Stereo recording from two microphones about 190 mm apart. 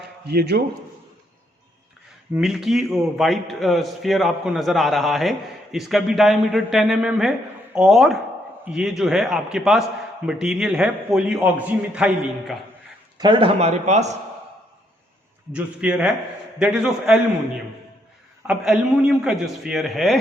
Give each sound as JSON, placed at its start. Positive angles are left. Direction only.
{"t": 0.3, "sound": "speech", "side_deg": -60}
{"t": 2.3, "sound": "a man's voice", "side_deg": 0}
{"t": 13.1, "sound": "speech", "side_deg": -25}
{"t": 13.6, "sound": "a man's voice", "side_deg": -35}
{"t": 15.5, "sound": "a man's voice", "side_deg": -5}
{"t": 18.4, "sound": "a man's voice", "side_deg": -5}